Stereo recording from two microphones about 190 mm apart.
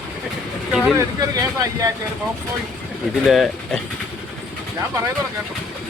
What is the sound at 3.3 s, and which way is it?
Speech, centre (ahead or behind).